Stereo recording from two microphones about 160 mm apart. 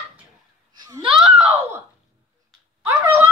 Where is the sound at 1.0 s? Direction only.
5° right (ahead or behind).